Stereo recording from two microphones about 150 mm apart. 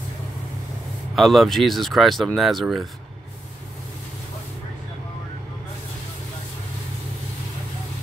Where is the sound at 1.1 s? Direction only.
Centre (ahead or behind).